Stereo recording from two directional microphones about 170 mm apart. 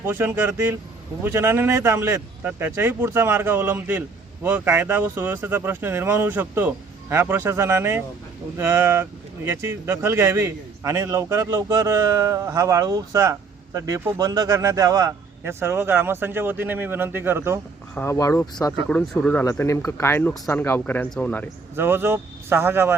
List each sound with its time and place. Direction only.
0.0 s speech: 10° right (ahead or behind)
17.9 s speech: 15° left (ahead or behind)
18.9 s speech: 5° left (ahead or behind)
21.8 s speech: 15° right (ahead or behind)